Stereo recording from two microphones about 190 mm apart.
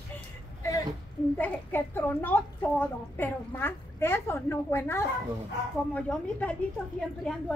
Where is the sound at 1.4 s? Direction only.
10° left (ahead or behind).